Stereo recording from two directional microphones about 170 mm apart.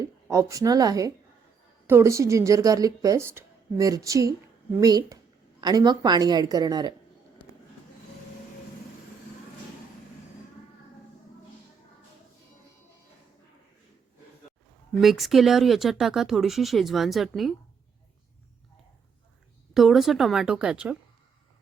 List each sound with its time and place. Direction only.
0.0 s a woman's voice: 20° right (ahead or behind)
15.0 s speech: centre (ahead or behind)
19.7 s speech: centre (ahead or behind)